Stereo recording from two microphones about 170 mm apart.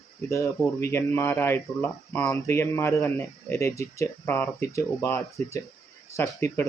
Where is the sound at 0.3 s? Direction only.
20° left (ahead or behind).